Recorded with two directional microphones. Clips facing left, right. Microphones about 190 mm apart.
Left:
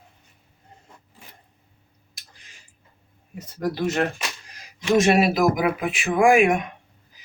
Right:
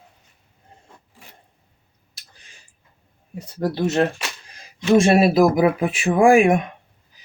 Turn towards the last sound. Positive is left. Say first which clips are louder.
# right 3 dB
turn(degrees=-30)  # may be behind; listen again after turning